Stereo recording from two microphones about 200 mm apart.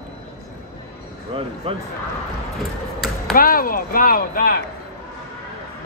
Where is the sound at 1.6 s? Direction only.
25° right (ahead or behind).